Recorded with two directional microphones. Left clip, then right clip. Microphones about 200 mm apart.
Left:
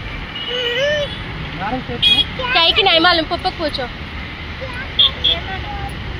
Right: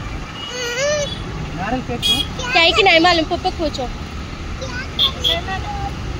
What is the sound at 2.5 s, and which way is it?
Speech, 10° right (ahead or behind).